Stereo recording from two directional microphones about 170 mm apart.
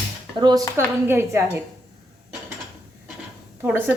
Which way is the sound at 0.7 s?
15° right (ahead or behind).